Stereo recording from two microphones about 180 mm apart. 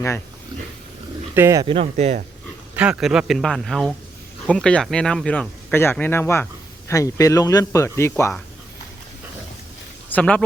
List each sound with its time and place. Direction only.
1.4 s speech: 15° right (ahead or behind)
1.6 s speech: 35° right (ahead or behind)
2.7 s speech: 5° right (ahead or behind); by 8.3 s 15° left (ahead or behind)
10.1 s speech: 10° left (ahead or behind)